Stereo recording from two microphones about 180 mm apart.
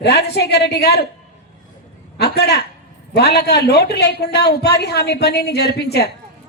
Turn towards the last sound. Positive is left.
turn(degrees=65)  # may be behind; listen again after turning